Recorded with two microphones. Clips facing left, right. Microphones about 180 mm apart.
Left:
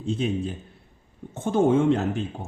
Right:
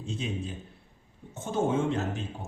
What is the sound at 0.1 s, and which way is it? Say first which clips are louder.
Speech: left 9 dB; 60° left (ahead or behind).